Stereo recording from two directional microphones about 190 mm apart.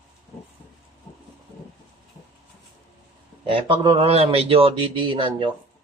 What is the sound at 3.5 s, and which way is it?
A man's voice, 25° right (ahead or behind).